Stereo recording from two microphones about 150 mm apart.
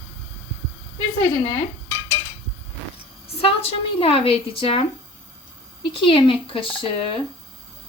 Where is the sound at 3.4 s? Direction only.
40° left (ahead or behind).